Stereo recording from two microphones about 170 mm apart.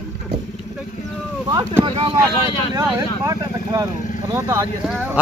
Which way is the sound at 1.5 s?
20° right (ahead or behind).